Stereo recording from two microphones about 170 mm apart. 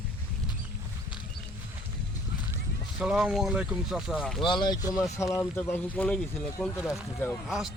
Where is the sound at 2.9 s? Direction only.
5° right (ahead or behind).